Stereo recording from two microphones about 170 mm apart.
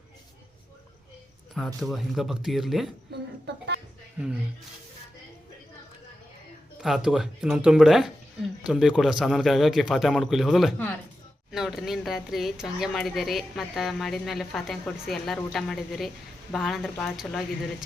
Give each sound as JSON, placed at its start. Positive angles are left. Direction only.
{"t": 1.5, "sound": "speech", "side_deg": 0}
{"t": 3.1, "sound": "a sound", "side_deg": -90}
{"t": 6.8, "sound": "speech", "side_deg": -5}